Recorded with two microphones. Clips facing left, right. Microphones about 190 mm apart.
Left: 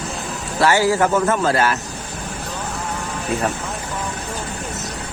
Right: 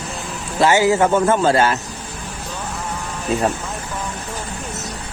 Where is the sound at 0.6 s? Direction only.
20° right (ahead or behind).